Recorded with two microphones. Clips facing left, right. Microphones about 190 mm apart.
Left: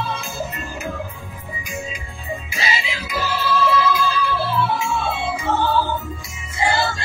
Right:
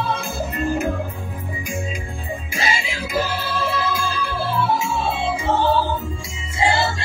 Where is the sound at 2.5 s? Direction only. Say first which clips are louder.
Right 2 dB; 50° right (ahead or behind).